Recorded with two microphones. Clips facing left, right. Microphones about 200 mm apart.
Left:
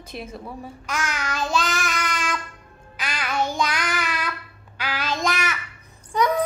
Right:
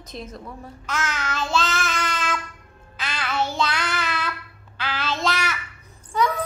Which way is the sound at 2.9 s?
15° left (ahead or behind).